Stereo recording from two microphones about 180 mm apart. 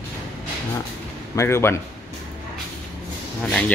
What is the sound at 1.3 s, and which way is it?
Speech, 15° left (ahead or behind).